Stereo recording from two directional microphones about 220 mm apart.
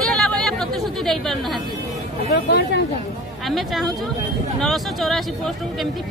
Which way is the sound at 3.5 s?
Centre (ahead or behind).